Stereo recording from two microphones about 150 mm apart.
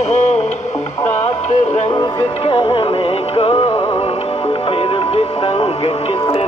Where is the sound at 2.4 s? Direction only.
35° left (ahead or behind).